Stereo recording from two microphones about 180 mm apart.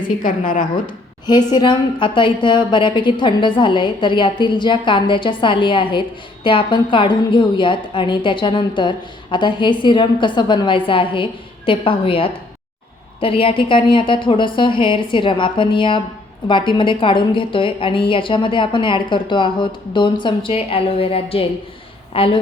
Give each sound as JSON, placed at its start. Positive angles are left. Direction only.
{"t": 0.2, "sound": "a woman's voice", "side_deg": 50}
{"t": 1.5, "sound": "a woman's voice", "side_deg": 25}